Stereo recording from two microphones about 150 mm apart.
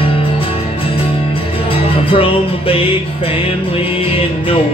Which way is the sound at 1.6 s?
35° left (ahead or behind).